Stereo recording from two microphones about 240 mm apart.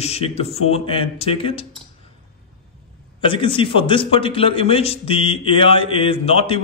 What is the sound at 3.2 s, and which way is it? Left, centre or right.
A man's voice, left.